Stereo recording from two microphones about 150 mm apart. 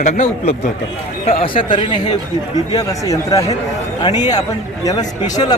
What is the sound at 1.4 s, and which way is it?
Speech, 35° left (ahead or behind).